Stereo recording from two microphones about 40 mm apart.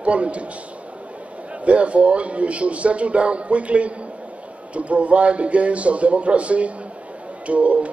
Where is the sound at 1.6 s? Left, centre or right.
Right.